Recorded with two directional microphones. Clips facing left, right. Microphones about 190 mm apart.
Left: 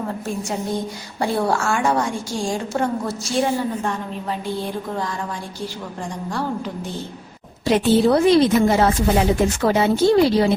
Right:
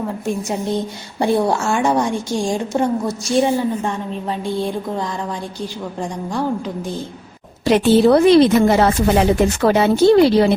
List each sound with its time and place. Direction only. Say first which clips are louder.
1.2 s a woman's voice: right 4 dB; 20° right (ahead or behind)
7.6 s a woman's voice: right 3 dB; 70° right (ahead or behind)